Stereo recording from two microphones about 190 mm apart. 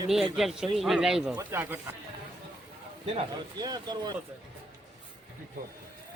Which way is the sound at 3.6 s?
20° right (ahead or behind).